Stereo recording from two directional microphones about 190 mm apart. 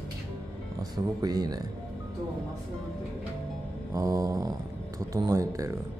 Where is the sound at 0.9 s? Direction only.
20° right (ahead or behind).